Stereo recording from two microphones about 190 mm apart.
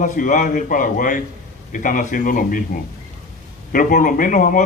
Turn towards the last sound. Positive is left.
turn(degrees=45)  # may be behind; listen again after turning